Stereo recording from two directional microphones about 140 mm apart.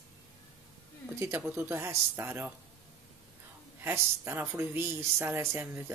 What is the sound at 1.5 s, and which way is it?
Speech, 15° right (ahead or behind).